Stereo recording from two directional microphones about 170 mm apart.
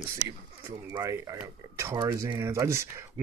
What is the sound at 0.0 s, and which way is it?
Speech, 15° right (ahead or behind).